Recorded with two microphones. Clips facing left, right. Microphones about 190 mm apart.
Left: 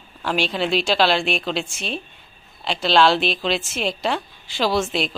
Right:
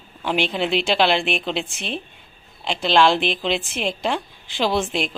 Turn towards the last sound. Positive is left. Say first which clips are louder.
# left 1 dB
turn(degrees=-15)  # may be behind; listen again after turning